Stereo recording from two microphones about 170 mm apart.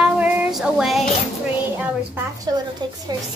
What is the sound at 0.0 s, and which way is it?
Female singing, 5° right (ahead or behind).